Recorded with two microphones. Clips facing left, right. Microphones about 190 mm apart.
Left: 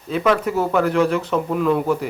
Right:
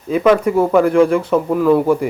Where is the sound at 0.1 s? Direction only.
10° right (ahead or behind).